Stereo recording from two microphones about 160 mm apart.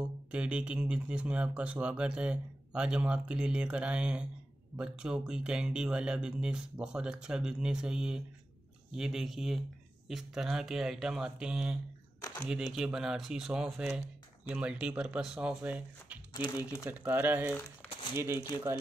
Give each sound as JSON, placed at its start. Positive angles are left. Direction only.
{"t": 0.3, "sound": "speech", "side_deg": -5}
{"t": 12.2, "sound": "a sound", "side_deg": 20}
{"t": 12.7, "sound": "speech", "side_deg": -5}
{"t": 16.3, "sound": "speech", "side_deg": 25}
{"t": 16.8, "sound": "speech", "side_deg": -10}